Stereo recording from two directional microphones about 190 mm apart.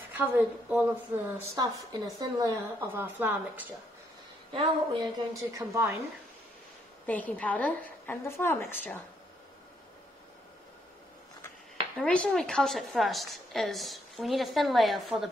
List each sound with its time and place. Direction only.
0.2 s a woman's voice: 10° right (ahead or behind)
4.5 s a woman's voice: 25° right (ahead or behind)
7.1 s a woman's voice: 10° left (ahead or behind)
12.0 s a woman's voice: 5° left (ahead or behind)